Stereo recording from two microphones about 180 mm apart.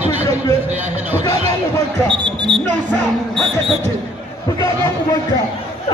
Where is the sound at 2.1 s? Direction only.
25° right (ahead or behind).